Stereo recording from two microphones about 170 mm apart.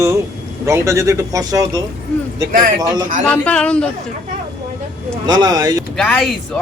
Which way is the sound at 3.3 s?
5° left (ahead or behind).